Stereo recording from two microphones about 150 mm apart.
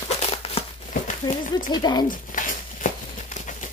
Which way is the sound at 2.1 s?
65° left (ahead or behind).